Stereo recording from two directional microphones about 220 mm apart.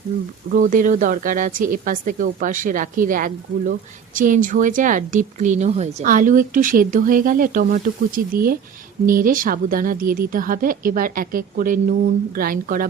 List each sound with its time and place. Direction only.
0.5 s a woman's voice: 35° right (ahead or behind)